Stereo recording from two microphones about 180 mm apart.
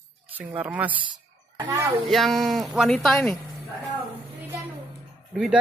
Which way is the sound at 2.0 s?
Centre (ahead or behind).